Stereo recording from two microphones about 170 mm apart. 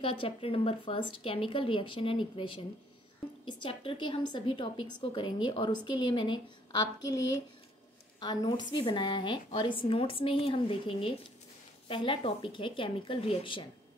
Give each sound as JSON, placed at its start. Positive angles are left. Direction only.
{"t": 0.0, "sound": "a woman's voice", "side_deg": 35}
{"t": 8.2, "sound": "a woman's voice", "side_deg": 25}